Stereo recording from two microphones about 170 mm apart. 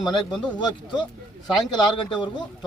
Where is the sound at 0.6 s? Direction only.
25° left (ahead or behind).